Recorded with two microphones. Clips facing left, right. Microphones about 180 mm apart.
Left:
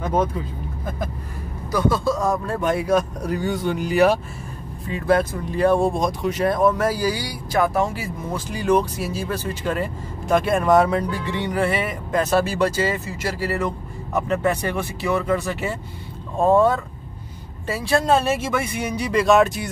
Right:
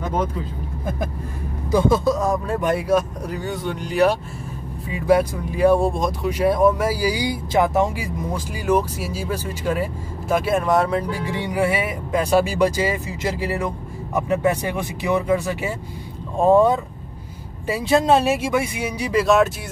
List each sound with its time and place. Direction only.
1.7 s speech: 20° right (ahead or behind)
2.1 s speech: 10° right (ahead or behind)
4.8 s speech: 10° right (ahead or behind)